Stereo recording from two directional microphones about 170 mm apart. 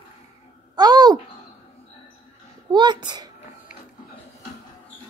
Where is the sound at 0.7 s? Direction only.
25° right (ahead or behind).